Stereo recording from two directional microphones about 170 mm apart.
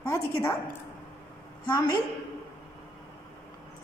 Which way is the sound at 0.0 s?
15° left (ahead or behind).